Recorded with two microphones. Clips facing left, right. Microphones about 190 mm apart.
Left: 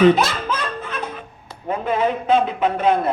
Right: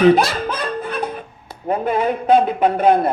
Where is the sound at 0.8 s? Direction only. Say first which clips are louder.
Right 5 dB; 35° right (ahead or behind).